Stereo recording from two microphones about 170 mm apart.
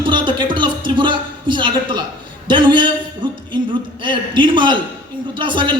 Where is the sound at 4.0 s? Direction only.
30° right (ahead or behind).